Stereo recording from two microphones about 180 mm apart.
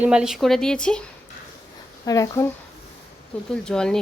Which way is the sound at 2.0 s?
20° left (ahead or behind).